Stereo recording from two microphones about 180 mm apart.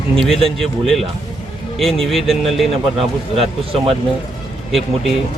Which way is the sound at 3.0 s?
35° right (ahead or behind).